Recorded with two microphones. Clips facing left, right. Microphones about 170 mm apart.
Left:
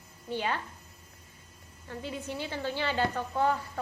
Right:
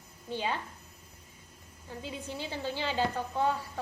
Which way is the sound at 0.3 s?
15° right (ahead or behind).